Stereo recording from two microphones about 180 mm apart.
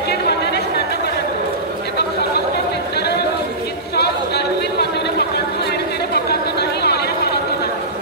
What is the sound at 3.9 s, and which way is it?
Chatter, 65° left (ahead or behind).